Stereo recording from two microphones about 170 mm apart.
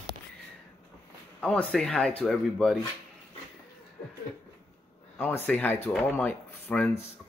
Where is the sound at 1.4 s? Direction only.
5° left (ahead or behind).